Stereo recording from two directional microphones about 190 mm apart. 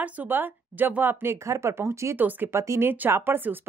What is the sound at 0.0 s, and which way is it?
Speech, 10° right (ahead or behind).